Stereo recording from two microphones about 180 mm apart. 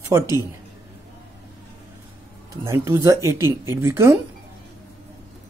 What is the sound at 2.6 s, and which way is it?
Speech, 15° right (ahead or behind).